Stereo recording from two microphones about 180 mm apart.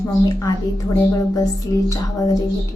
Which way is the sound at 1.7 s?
15° left (ahead or behind).